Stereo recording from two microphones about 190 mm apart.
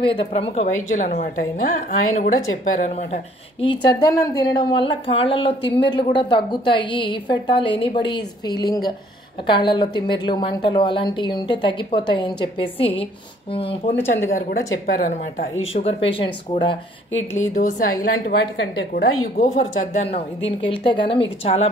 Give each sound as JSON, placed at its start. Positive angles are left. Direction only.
{"t": 0.0, "sound": "a woman's voice", "side_deg": 30}
{"t": 3.6, "sound": "a woman's voice", "side_deg": 25}
{"t": 14.2, "sound": "speech", "side_deg": 50}
{"t": 15.7, "sound": "a woman's voice", "side_deg": 30}
{"t": 17.6, "sound": "speech", "side_deg": 45}
{"t": 18.6, "sound": "a woman's voice", "side_deg": 80}
{"t": 19.3, "sound": "a woman's voice", "side_deg": 40}